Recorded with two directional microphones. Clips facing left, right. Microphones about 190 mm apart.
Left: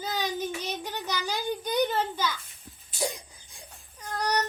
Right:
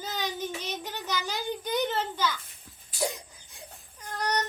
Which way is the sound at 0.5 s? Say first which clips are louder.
Left 2 dB; 10° left (ahead or behind).